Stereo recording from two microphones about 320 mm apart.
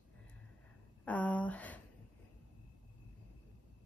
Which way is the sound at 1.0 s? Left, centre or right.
Centre.